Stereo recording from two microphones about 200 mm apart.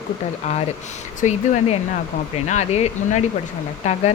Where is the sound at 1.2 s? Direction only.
35° left (ahead or behind).